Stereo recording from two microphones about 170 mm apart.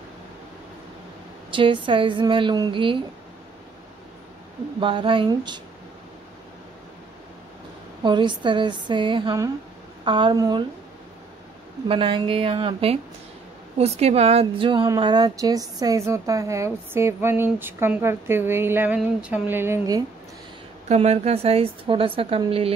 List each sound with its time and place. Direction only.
1.5 s a woman's voice: 30° right (ahead or behind)
4.7 s a woman's voice: 30° right (ahead or behind)
8.0 s a woman's voice: 25° right (ahead or behind)
11.9 s a woman's voice: 30° right (ahead or behind); by 20.0 s 15° right (ahead or behind)
20.9 s a woman's voice: 40° right (ahead or behind)